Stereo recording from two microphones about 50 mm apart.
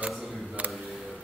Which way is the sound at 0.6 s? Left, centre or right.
Right.